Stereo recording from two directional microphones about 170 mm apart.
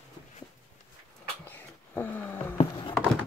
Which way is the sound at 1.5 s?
10° left (ahead or behind).